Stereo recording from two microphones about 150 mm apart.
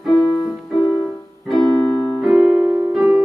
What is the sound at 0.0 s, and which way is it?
Keyboard, centre (ahead or behind).